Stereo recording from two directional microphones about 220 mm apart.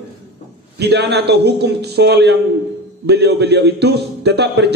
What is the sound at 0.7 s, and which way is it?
A man's voice, 50° right (ahead or behind).